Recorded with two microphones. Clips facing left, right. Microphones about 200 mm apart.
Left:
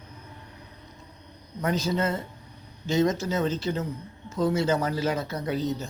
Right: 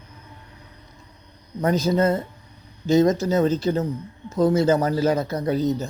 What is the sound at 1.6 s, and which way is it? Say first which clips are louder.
Speech: right 6 dB; 40° right (ahead or behind).